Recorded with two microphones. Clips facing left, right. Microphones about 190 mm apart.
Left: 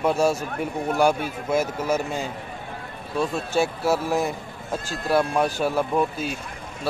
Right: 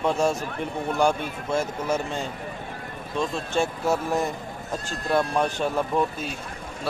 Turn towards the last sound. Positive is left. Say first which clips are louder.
# left 2 dB
turn(degrees=5)  # may be behind; listen again after turning